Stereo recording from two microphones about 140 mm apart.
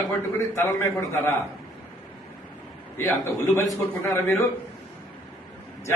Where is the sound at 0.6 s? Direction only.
15° left (ahead or behind).